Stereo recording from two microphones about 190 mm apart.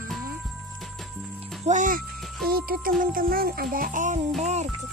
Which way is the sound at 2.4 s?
50° right (ahead or behind).